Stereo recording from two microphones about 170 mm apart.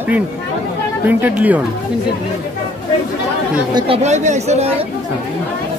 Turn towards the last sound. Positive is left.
turn(degrees=-40)  # may be behind; listen again after turning